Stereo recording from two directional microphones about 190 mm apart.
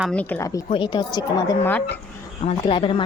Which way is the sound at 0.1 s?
5° left (ahead or behind).